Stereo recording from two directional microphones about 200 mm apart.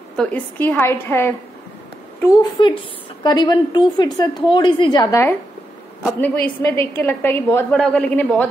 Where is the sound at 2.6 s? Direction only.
25° left (ahead or behind).